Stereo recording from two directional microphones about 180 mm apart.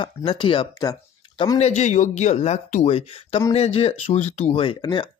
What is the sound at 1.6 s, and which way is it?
Speech, 40° left (ahead or behind).